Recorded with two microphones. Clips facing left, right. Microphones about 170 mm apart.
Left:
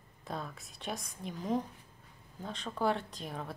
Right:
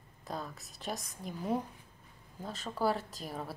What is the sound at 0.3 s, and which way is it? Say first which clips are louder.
A woman's voice: even; centre (ahead or behind).